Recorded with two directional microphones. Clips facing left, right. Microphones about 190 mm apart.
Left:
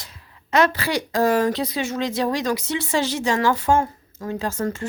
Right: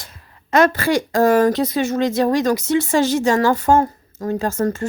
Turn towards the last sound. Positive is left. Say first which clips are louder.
# right 5 dB
turn(degrees=-45)  # may be behind; listen again after turning